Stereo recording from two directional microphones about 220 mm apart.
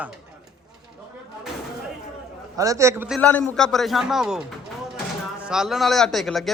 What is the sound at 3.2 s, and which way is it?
Speech, 5° left (ahead or behind).